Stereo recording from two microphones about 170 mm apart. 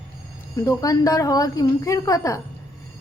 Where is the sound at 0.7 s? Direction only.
20° left (ahead or behind).